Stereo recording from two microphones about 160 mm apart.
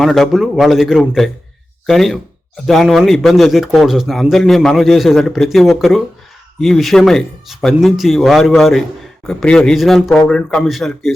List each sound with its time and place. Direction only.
0.0 s speech: centre (ahead or behind)